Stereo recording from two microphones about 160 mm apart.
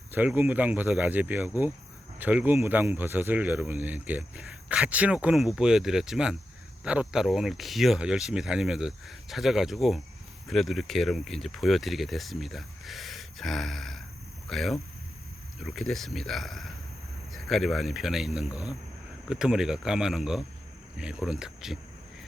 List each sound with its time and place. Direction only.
0.1 s speech: 10° right (ahead or behind)